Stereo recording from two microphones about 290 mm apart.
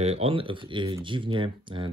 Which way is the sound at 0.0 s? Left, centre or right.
Right.